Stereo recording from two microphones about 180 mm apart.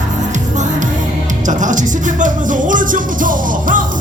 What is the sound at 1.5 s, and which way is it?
Music, 45° right (ahead or behind).